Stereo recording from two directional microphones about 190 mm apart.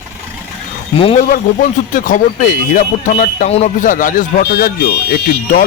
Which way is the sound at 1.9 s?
45° left (ahead or behind).